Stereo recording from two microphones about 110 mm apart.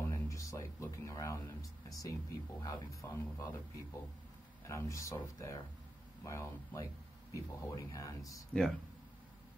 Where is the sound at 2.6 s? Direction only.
30° left (ahead or behind).